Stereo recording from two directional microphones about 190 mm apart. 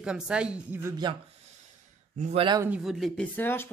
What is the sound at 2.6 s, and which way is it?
Speech, 5° right (ahead or behind).